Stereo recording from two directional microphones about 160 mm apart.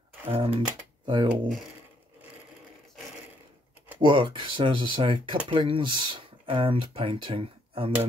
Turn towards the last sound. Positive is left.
turn(degrees=-35)  # may be behind; listen again after turning